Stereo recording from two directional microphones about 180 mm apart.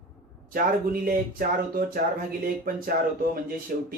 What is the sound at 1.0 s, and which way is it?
Speech, 55° right (ahead or behind).